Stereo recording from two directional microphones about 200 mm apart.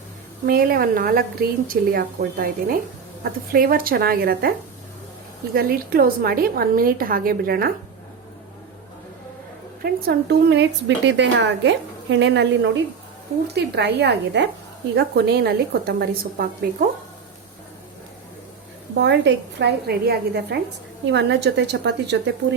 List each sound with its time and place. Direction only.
0.4 s a woman's voice: 50° right (ahead or behind)
5.5 s a woman's voice: 50° right (ahead or behind)
9.8 s a woman's voice: 55° right (ahead or behind)
18.9 s a woman's voice: 60° right (ahead or behind)